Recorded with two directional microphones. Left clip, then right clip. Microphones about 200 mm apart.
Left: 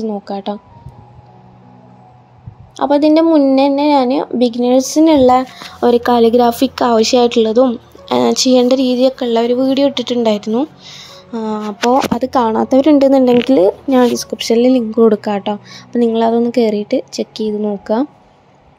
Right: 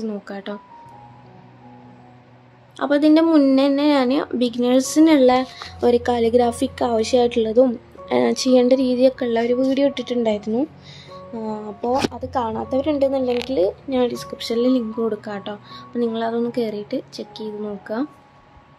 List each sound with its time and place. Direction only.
0.0 s speech: 15° left (ahead or behind)
2.7 s speech: 20° left (ahead or behind)
12.2 s speech: 40° left (ahead or behind)